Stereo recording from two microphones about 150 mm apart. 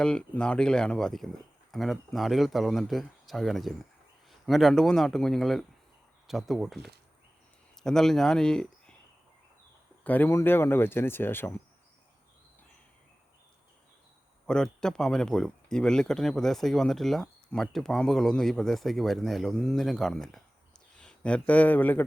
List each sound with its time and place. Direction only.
0.0 s speech: 5° left (ahead or behind)
10.0 s speech: 10° left (ahead or behind)
14.4 s speech: 5° left (ahead or behind)